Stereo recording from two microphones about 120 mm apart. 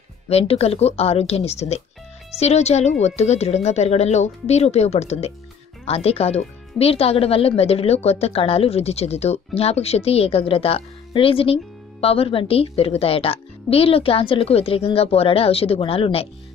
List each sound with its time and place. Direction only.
0.3 s a woman's voice: 60° left (ahead or behind)